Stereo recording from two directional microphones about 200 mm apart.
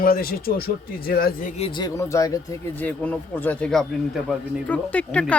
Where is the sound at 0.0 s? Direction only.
45° left (ahead or behind).